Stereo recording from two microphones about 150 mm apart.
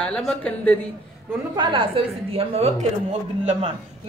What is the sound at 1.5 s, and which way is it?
A woman's voice, 35° right (ahead or behind).